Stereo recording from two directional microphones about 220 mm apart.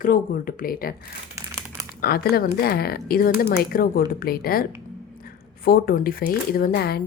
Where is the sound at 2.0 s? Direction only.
45° left (ahead or behind).